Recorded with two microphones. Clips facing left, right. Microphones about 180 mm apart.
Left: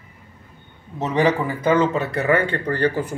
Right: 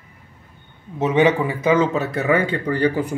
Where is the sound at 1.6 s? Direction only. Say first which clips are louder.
Even; 10° right (ahead or behind).